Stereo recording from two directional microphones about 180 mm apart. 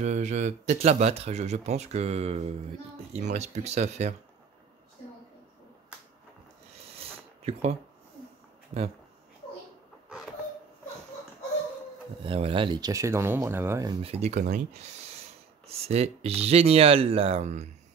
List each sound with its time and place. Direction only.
0.0 s speech: 40° right (ahead or behind)
7.0 s a sound: 35° right (ahead or behind)
12.2 s speech: 30° right (ahead or behind)
14.0 s speech: 35° right (ahead or behind)